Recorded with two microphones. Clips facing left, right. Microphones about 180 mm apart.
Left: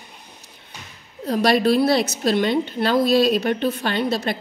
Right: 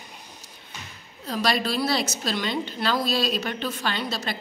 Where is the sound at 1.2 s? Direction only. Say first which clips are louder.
Left 8 dB; 55° left (ahead or behind).